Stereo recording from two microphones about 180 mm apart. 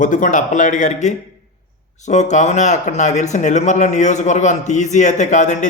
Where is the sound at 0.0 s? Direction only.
45° left (ahead or behind).